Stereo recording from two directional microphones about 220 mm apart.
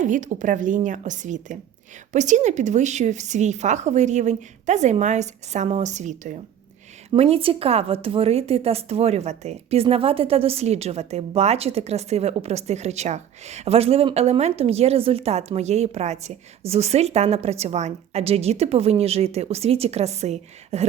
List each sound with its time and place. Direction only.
0.0 s a woman's voice: 35° right (ahead or behind)